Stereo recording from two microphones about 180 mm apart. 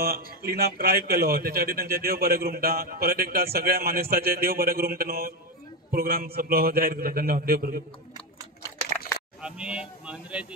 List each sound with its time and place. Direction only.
0.0 s a man's voice: 60° right (ahead or behind)
9.4 s speech: 5° right (ahead or behind)